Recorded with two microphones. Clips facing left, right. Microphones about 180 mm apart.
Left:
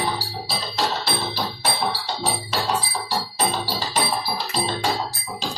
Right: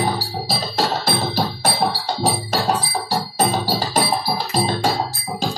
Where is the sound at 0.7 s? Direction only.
45° right (ahead or behind).